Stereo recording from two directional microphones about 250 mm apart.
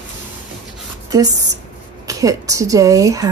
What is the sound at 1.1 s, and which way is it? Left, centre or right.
Speech, centre.